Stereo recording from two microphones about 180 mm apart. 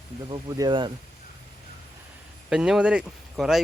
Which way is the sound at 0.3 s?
20° right (ahead or behind).